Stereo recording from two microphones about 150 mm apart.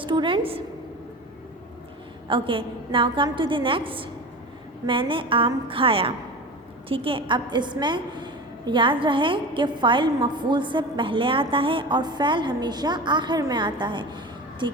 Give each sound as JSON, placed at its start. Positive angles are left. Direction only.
{"t": 0.0, "sound": "a woman's voice", "side_deg": -35}
{"t": 2.2, "sound": "a woman's voice", "side_deg": -35}